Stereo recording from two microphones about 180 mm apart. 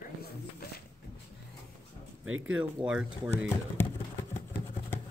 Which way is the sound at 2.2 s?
90° right.